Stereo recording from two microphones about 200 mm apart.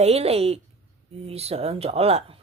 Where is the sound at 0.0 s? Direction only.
30° right (ahead or behind).